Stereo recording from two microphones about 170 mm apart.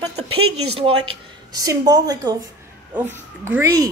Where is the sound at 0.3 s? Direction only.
35° right (ahead or behind).